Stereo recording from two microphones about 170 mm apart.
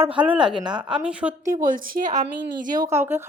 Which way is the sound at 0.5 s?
25° right (ahead or behind).